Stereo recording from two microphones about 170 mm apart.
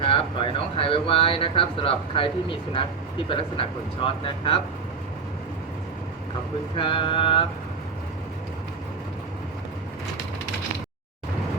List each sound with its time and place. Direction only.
0.0 s speech: 30° left (ahead or behind)
6.7 s speech: 30° left (ahead or behind)